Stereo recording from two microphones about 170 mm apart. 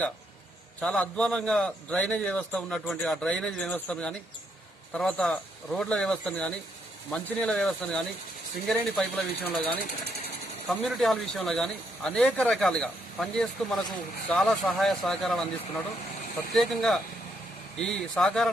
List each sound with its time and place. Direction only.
0.8 s a man's voice: 5° left (ahead or behind)
16.5 s a man's voice: centre (ahead or behind)